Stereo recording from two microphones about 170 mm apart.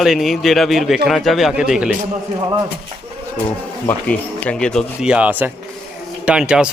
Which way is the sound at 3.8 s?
10° left (ahead or behind).